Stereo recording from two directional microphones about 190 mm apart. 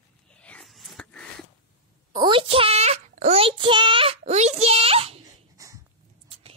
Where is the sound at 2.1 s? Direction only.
25° right (ahead or behind).